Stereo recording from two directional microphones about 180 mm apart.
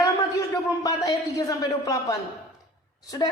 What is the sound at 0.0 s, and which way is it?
Speech, 20° left (ahead or behind).